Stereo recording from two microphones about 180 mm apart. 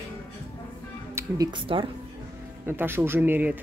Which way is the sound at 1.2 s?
15° right (ahead or behind).